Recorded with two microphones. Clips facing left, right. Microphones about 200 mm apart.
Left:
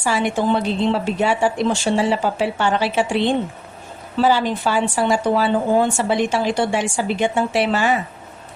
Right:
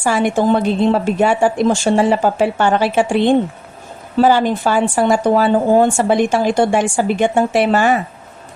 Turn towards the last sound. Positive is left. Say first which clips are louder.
# right 5 dB
turn(degrees=-50)  # may be behind; listen again after turning